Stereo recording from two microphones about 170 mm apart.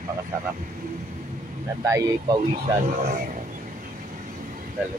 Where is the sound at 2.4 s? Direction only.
40° right (ahead or behind).